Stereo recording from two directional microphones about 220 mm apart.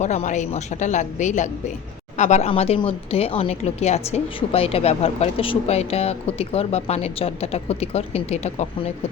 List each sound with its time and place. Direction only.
0.0 s a woman's voice: 30° left (ahead or behind)